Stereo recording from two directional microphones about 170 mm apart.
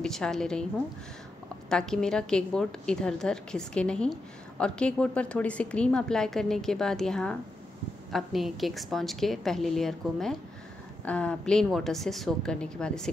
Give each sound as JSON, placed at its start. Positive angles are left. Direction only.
{"t": 0.0, "sound": "a woman's voice", "side_deg": 5}